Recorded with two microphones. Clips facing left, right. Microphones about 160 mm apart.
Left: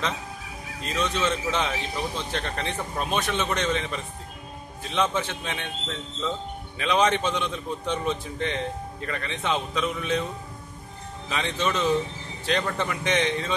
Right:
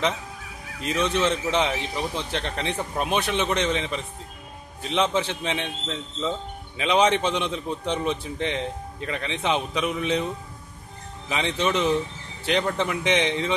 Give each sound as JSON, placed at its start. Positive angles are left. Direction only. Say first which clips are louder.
{"t": 0.8, "sound": "a man's voice", "louder": "right 3 dB", "side_deg": -20}
{"t": 6.8, "sound": "a man's voice", "louder": "right 2 dB", "side_deg": -15}
{"t": 11.2, "sound": "a man's voice", "louder": "right 2 dB", "side_deg": -20}